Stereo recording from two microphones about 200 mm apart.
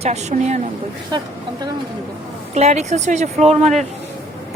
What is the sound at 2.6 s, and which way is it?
Speech, 35° right (ahead or behind).